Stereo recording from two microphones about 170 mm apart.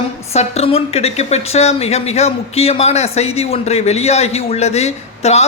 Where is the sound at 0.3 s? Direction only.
35° left (ahead or behind).